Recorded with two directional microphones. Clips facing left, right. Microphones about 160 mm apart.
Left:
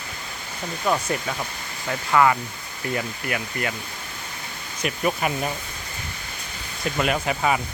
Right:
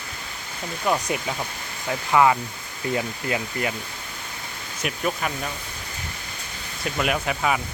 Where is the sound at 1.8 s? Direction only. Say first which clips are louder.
Right 1 dB; 15° right (ahead or behind).